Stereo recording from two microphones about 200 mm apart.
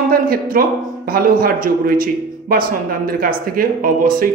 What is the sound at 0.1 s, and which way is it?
Speech, 45° right (ahead or behind).